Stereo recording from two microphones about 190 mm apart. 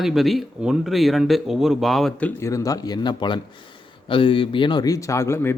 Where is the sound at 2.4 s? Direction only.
15° left (ahead or behind).